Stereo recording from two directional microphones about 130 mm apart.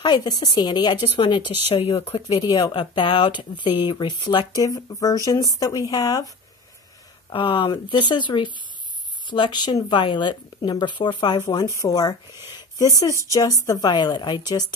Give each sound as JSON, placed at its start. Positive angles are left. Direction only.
{"t": 0.0, "sound": "speech", "side_deg": 35}
{"t": 7.2, "sound": "speech", "side_deg": 40}
{"t": 11.4, "sound": "speech", "side_deg": 25}